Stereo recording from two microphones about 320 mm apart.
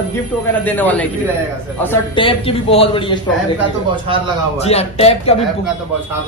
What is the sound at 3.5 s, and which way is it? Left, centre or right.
Speech, centre.